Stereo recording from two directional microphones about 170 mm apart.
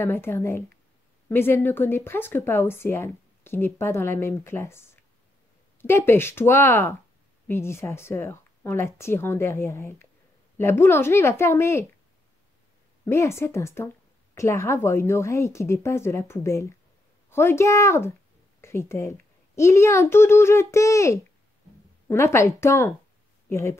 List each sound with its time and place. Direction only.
0.0 s a woman's voice: 15° left (ahead or behind)
13.0 s a woman's voice: 15° left (ahead or behind)